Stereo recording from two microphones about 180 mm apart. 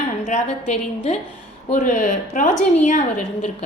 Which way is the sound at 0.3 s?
40° left (ahead or behind).